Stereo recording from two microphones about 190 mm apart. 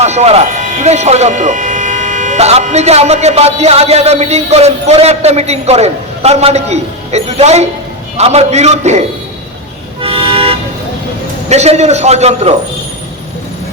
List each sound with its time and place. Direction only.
0.0 s speech: 35° right (ahead or behind)
10.0 s toot: 30° right (ahead or behind)
11.4 s speech: 35° right (ahead or behind)